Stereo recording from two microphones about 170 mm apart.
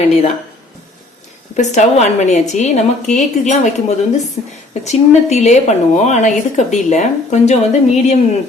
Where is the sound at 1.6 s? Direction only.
45° left (ahead or behind).